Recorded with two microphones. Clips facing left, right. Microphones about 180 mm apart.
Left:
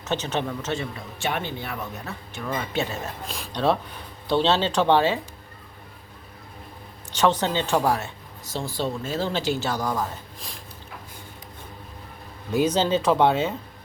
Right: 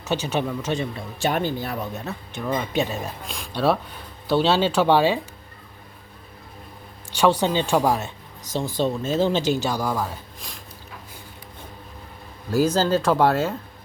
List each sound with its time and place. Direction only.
0.0 s speech: 10° right (ahead or behind)
0.9 s speech: 40° right (ahead or behind)
2.0 s speech: 20° right (ahead or behind)
3.2 s speech: centre (ahead or behind)
7.1 s speech: 10° right (ahead or behind)
12.5 s speech: centre (ahead or behind)